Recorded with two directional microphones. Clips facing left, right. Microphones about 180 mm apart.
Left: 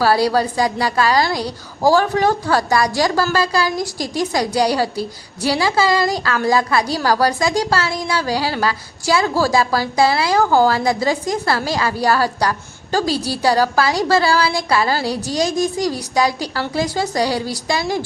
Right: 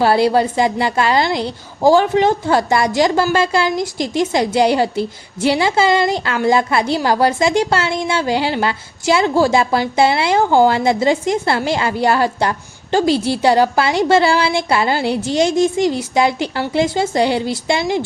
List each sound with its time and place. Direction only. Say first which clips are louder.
0.0 s a woman's voice: right 2 dB; 25° right (ahead or behind)